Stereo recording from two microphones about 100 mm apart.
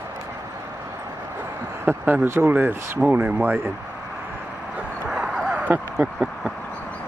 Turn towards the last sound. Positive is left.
turn(degrees=-15)  # may be behind; listen again after turning